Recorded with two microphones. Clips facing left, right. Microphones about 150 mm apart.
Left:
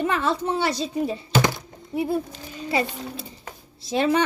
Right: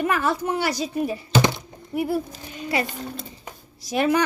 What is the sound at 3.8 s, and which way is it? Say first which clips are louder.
Speech: even; 25° left (ahead or behind).